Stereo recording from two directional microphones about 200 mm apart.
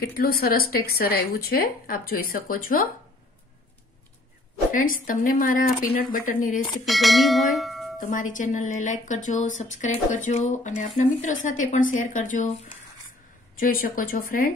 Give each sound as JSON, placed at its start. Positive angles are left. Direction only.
{"t": 0.2, "sound": "a woman's voice", "side_deg": 50}
{"t": 4.7, "sound": "a woman's voice", "side_deg": 45}
{"t": 6.9, "sound": "speech", "side_deg": 0}
{"t": 8.0, "sound": "speech", "side_deg": 40}
{"t": 13.6, "sound": "a woman's voice", "side_deg": 45}